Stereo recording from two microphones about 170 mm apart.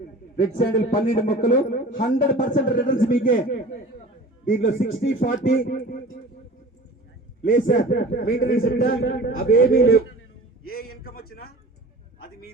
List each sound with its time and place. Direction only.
0.7 s a man's voice: 50° left (ahead or behind)
4.4 s a man's voice: 45° left (ahead or behind)
7.4 s a man's voice: 55° left (ahead or behind)
11.0 s a man's voice: 65° left (ahead or behind)